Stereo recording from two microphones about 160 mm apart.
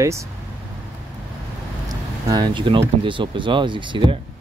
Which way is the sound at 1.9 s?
25° right (ahead or behind).